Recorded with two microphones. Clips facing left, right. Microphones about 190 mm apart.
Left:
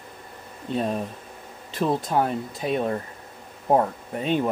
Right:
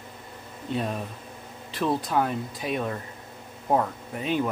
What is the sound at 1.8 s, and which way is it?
Speech, 25° left (ahead or behind).